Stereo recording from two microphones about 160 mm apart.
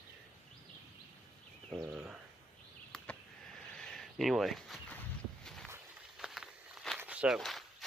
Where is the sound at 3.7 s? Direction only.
5° left (ahead or behind).